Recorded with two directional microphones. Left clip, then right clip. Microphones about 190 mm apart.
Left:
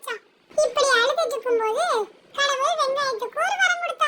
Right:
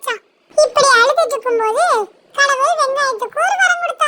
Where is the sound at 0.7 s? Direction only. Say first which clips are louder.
Right 9 dB; 35° right (ahead or behind).